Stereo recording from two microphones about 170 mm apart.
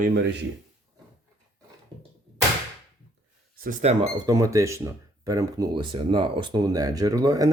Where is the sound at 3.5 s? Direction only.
55° right (ahead or behind).